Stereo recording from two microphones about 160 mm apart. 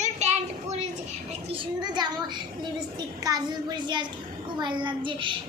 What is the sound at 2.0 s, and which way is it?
A child's voice, 25° right (ahead or behind).